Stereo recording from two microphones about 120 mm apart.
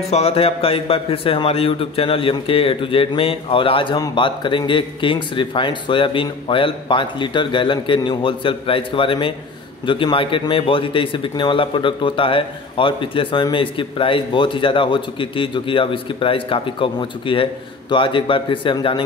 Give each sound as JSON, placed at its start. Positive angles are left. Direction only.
{"t": 0.1, "sound": "speech", "side_deg": 55}